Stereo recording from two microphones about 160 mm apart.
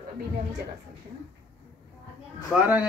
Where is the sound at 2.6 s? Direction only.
10° right (ahead or behind).